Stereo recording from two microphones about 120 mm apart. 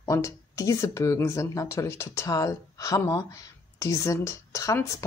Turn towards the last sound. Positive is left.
turn(degrees=25)  # may be behind; listen again after turning